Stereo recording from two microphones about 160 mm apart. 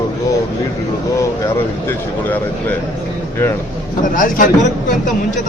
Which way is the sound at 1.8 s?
10° left (ahead or behind).